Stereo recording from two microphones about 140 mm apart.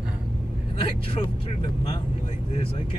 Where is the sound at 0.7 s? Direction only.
40° left (ahead or behind).